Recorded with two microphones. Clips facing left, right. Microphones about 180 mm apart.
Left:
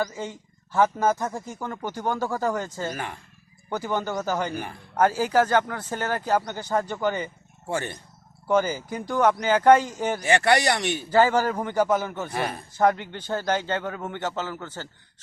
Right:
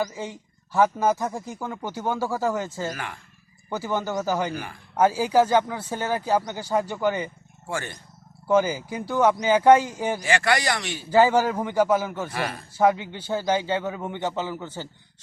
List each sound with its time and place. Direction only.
0.2 s a man's voice: 10° right (ahead or behind)
7.7 s speech: 20° left (ahead or behind)
8.4 s speech: 10° right (ahead or behind)
10.2 s speech: 20° left (ahead or behind)
11.1 s speech: 10° right (ahead or behind)